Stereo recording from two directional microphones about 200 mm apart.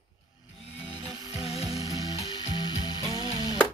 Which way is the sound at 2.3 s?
20° left (ahead or behind).